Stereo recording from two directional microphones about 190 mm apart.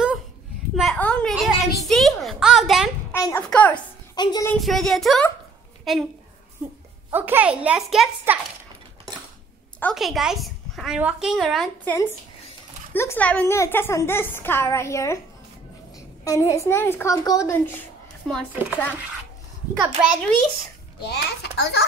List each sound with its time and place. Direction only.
0.7 s a sound: 5° left (ahead or behind)
3.2 s a child's voice: 15° left (ahead or behind)
4.1 s speech: 20° left (ahead or behind)
4.6 s a woman's voice: centre (ahead or behind)
6.6 s a sound: 10° right (ahead or behind)
7.1 s a woman's voice: 10° right (ahead or behind)
9.8 s a woman's voice: 5° left (ahead or behind)
16.3 s a child's voice: 15° left (ahead or behind)
18.3 s a woman's voice: 5° right (ahead or behind)
19.8 s a woman's voice: 5° right (ahead or behind)
21.0 s a child's voice: 60° left (ahead or behind)